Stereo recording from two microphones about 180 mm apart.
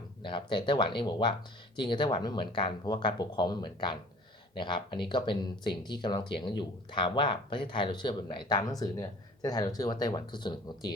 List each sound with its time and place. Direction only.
0.2 s speech: 25° left (ahead or behind)